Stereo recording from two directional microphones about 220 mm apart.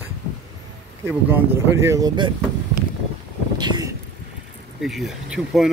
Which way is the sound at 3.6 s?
20° right (ahead or behind).